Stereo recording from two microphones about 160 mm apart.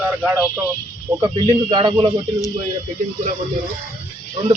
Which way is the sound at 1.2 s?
25° right (ahead or behind).